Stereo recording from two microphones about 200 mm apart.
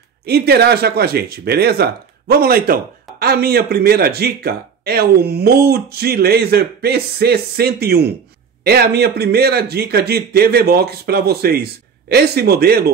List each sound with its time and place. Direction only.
0.2 s speech: 50° right (ahead or behind)